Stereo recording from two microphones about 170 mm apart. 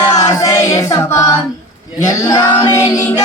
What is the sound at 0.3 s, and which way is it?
Choir, 20° left (ahead or behind).